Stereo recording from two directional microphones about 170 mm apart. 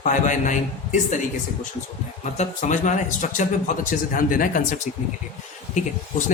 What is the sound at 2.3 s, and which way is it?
Speech, 45° left (ahead or behind).